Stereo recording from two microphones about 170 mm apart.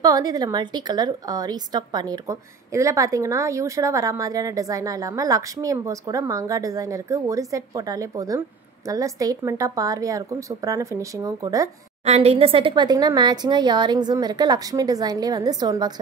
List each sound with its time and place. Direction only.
0.0 s a woman's voice: 20° right (ahead or behind)
12.0 s a woman's voice: 40° right (ahead or behind)